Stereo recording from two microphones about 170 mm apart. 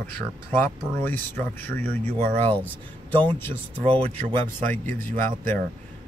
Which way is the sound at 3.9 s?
35° right (ahead or behind).